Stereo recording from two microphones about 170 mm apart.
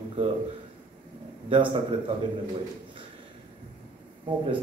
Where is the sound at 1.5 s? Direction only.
30° right (ahead or behind).